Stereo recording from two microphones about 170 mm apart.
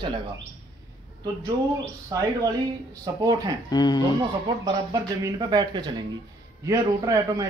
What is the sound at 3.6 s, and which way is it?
Speech, 25° left (ahead or behind).